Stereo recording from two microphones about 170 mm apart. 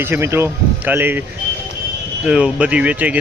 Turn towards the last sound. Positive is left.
turn(degrees=-10)  # may be behind; listen again after turning